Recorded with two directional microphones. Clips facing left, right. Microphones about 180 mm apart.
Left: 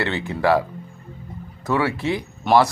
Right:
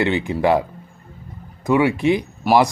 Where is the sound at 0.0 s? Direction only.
15° right (ahead or behind).